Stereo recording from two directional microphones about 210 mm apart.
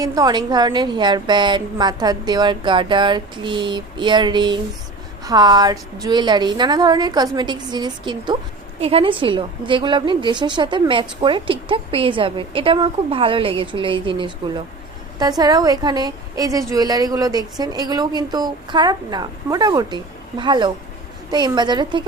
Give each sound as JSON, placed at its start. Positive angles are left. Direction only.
{"t": 0.0, "sound": "a woman's voice", "side_deg": -20}